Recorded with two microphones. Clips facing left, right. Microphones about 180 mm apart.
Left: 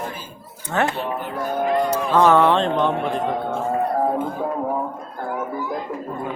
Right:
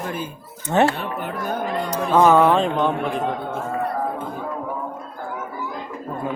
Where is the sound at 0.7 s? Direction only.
20° right (ahead or behind).